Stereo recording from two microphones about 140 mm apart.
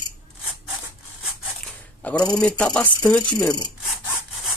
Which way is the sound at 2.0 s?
10° left (ahead or behind).